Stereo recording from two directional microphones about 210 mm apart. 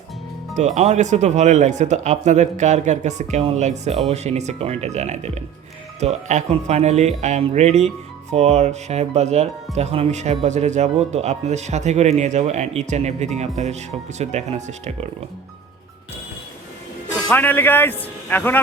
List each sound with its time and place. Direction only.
0.5 s speech: 35° right (ahead or behind)
17.2 s a man's voice: 10° left (ahead or behind)